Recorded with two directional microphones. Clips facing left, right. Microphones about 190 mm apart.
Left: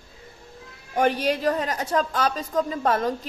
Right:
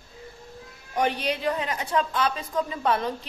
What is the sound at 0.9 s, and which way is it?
Speech, 45° left (ahead or behind).